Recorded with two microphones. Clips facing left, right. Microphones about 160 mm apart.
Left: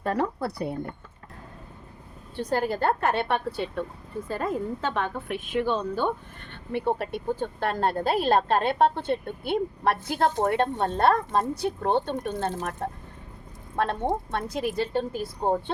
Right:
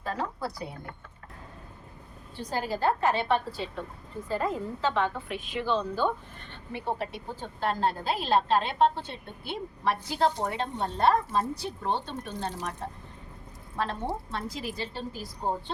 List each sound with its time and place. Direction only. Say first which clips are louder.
0.0 s a woman's voice: left 6 dB; 60° left (ahead or behind)
2.3 s a woman's voice: left 5 dB; 60° left (ahead or behind)